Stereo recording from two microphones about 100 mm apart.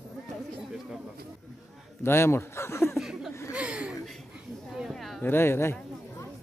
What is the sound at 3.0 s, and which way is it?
Chuckle, 5° right (ahead or behind).